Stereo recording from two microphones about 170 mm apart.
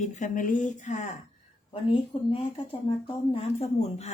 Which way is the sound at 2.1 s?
25° left (ahead or behind).